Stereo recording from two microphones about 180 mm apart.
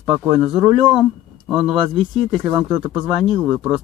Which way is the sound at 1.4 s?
5° right (ahead or behind).